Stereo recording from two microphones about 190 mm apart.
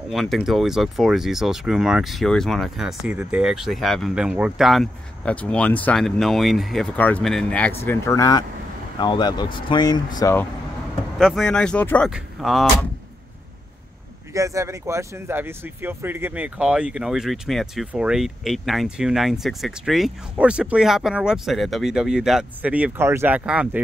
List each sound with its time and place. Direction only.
0.1 s speech: centre (ahead or behind); by 10.4 s 20° left (ahead or behind)
11.1 s speech: centre (ahead or behind)
14.3 s speech: 15° right (ahead or behind)